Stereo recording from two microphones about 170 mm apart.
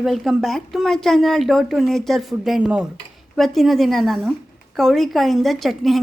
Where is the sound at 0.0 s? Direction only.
Centre (ahead or behind).